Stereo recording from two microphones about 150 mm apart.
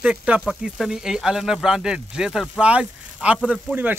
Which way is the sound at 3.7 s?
15° right (ahead or behind).